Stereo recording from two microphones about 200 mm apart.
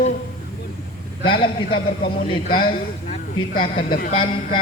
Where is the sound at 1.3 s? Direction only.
25° left (ahead or behind).